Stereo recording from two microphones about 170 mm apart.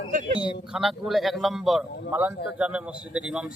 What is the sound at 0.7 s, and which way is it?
A man's voice, centre (ahead or behind).